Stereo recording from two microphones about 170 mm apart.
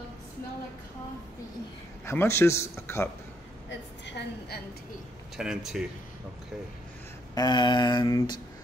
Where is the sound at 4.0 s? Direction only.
80° left.